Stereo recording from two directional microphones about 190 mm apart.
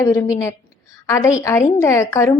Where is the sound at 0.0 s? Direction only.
15° left (ahead or behind).